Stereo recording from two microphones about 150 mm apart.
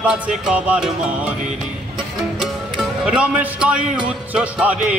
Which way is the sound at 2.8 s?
5° right (ahead or behind).